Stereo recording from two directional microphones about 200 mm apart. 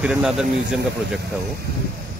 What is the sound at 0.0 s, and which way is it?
Speech, centre (ahead or behind).